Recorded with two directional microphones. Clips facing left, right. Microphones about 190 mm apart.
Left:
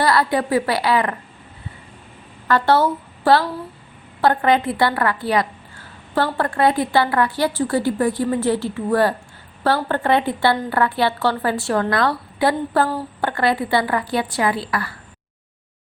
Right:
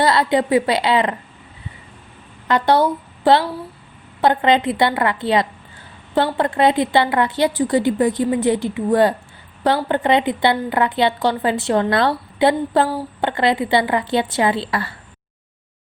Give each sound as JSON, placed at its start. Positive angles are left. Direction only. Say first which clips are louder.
{"t": 0.0, "sound": "a woman's voice", "louder": "right 2 dB", "side_deg": -20}
{"t": 2.5, "sound": "a woman's voice", "louder": "right 1 dB", "side_deg": -15}